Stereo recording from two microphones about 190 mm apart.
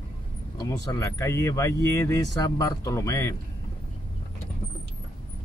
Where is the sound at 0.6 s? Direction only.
20° left (ahead or behind).